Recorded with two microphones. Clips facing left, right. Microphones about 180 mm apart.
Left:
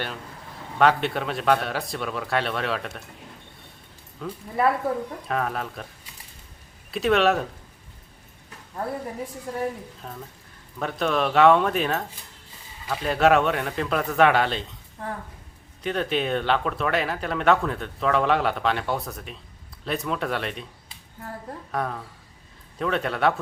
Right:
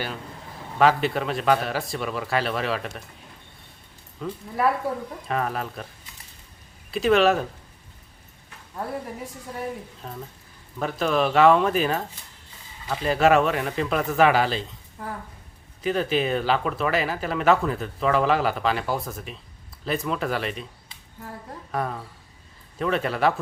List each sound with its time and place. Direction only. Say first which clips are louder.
0.8 s speech: right 1 dB; centre (ahead or behind)
4.2 s speech: left 1 dB; centre (ahead or behind)
6.9 s speech: right 2 dB; centre (ahead or behind)
10.0 s speech: right 1 dB; centre (ahead or behind)
21.7 s speech: right 1 dB; 5° right (ahead or behind)